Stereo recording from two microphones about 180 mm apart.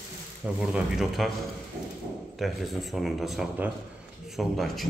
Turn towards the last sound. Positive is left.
turn(degrees=0)  # may be behind; listen again after turning